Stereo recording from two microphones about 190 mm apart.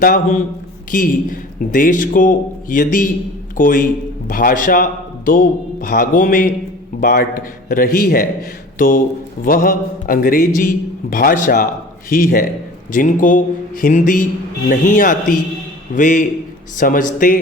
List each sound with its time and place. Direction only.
0.0 s a man's voice: 40° left (ahead or behind)
9.4 s a man's voice: 50° left (ahead or behind)